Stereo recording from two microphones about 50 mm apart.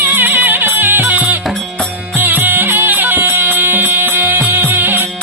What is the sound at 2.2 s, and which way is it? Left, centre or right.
Music, right.